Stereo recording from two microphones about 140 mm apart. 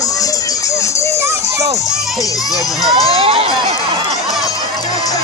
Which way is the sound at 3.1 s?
45° right (ahead or behind).